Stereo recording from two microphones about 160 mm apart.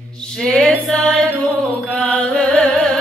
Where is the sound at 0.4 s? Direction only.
5° left (ahead or behind).